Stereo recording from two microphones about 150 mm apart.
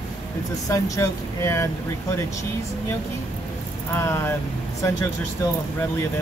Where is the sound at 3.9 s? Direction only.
20° left (ahead or behind).